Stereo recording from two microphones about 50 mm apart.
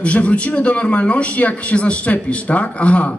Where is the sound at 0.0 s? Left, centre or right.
Left.